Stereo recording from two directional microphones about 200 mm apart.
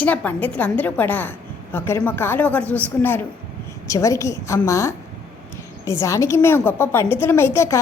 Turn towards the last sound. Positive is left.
turn(degrees=15)  # may be behind; listen again after turning